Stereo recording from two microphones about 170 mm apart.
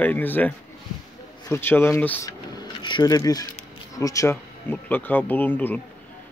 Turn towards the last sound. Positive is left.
turn(degrees=10)  # may be behind; listen again after turning